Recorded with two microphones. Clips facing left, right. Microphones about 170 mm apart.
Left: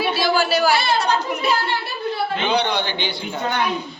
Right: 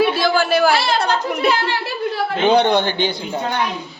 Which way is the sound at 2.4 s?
45° right (ahead or behind).